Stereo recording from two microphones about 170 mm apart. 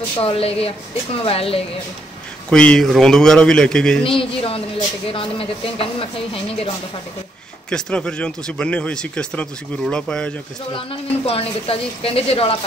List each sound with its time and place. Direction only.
0.2 s a woman's voice: 35° left (ahead or behind)
2.5 s speech: 5° left (ahead or behind)
4.0 s a woman's voice: 30° left (ahead or behind)
7.7 s speech: 5° left (ahead or behind)
10.7 s a woman's voice: 35° left (ahead or behind)